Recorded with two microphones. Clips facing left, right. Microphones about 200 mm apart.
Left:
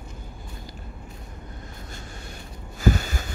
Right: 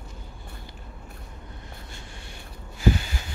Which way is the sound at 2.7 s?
45° left (ahead or behind).